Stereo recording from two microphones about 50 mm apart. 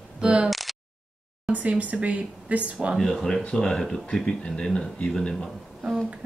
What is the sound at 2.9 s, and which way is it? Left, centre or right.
Speech, centre.